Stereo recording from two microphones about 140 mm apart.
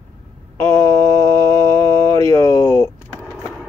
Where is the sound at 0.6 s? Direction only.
20° left (ahead or behind).